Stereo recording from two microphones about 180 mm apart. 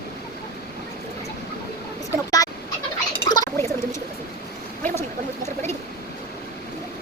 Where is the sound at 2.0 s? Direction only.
20° left (ahead or behind).